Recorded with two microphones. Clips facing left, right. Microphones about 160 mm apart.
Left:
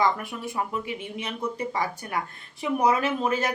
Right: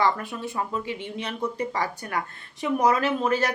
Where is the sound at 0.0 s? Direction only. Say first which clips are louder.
Right 1 dB; 15° left (ahead or behind).